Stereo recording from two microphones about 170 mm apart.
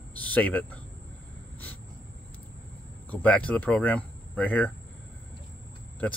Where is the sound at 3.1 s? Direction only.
10° left (ahead or behind).